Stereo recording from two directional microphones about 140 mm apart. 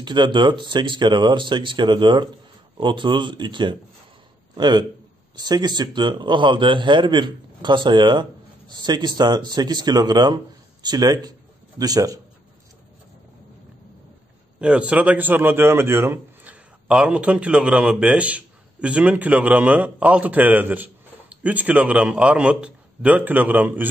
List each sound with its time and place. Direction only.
0.0 s a man's voice: 35° right (ahead or behind)
14.6 s a man's voice: 10° right (ahead or behind)
16.8 s a man's voice: 5° right (ahead or behind)